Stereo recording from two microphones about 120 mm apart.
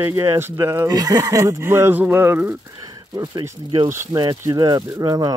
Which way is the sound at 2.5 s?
30° right (ahead or behind).